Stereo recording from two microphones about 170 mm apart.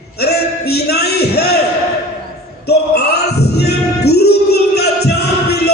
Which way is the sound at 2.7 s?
70° left (ahead or behind).